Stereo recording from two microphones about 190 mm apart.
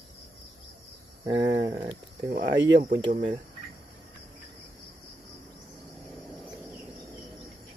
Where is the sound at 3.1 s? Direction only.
35° right (ahead or behind).